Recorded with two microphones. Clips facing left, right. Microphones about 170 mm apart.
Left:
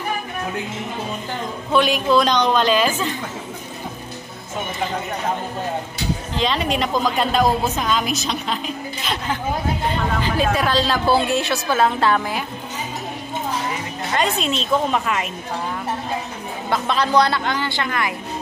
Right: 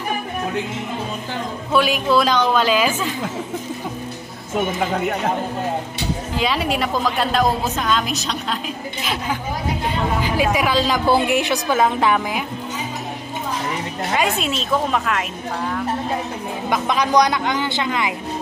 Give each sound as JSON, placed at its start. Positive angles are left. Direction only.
{"t": 1.7, "sound": "a woman's voice", "side_deg": -5}
{"t": 6.3, "sound": "a woman's voice", "side_deg": -10}
{"t": 14.1, "sound": "a woman's voice", "side_deg": -5}
{"t": 16.6, "sound": "a woman's voice", "side_deg": -15}